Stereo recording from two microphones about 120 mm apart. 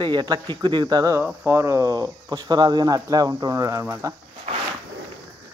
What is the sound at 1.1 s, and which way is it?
Speech, 15° right (ahead or behind).